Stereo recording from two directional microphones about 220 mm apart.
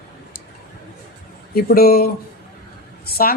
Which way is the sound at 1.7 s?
45° left (ahead or behind).